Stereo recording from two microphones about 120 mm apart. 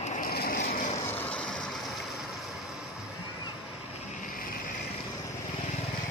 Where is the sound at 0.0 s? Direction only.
80° left.